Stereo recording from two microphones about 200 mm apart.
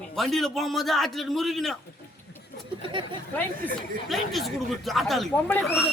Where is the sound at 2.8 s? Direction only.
25° right (ahead or behind).